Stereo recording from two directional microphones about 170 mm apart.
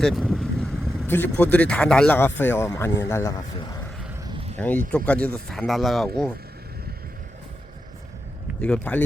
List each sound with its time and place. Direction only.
0.0 s speech: 5° right (ahead or behind)
1.0 s speech: 10° left (ahead or behind)
4.2 s a sound: 25° right (ahead or behind)
4.5 s speech: 10° left (ahead or behind)
8.6 s speech: 10° left (ahead or behind)